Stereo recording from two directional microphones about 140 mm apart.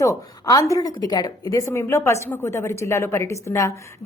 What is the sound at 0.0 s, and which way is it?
A woman's voice, 25° left (ahead or behind).